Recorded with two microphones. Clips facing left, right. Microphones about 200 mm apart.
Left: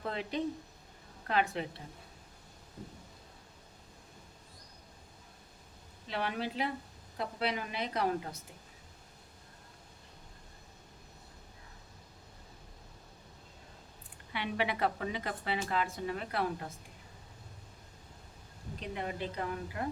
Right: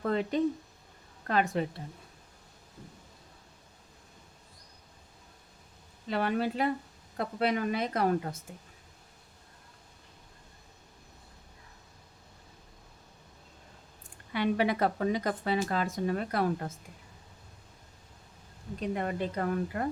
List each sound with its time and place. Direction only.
0.1 s a woman's voice: 45° right (ahead or behind)
6.1 s a woman's voice: 50° right (ahead or behind)
14.3 s speech: 45° right (ahead or behind)
18.8 s a woman's voice: 45° right (ahead or behind)